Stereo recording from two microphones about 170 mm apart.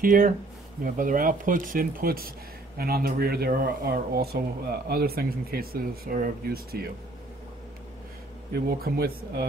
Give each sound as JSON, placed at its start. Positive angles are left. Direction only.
{"t": 0.0, "sound": "speech", "side_deg": -55}
{"t": 8.5, "sound": "speech", "side_deg": -65}